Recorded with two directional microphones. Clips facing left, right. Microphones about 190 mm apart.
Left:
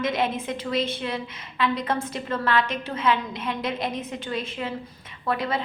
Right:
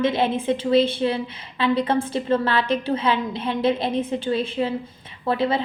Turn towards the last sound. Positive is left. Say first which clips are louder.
# right 5 dB
turn(degrees=-30)  # may be behind; listen again after turning